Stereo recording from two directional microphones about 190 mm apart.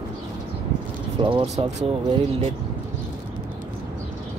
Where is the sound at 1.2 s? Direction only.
25° right (ahead or behind).